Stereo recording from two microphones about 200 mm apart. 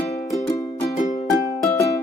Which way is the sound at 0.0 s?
30° left (ahead or behind).